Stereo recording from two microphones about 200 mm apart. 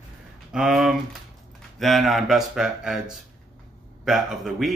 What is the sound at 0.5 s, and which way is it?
Speech, 5° right (ahead or behind).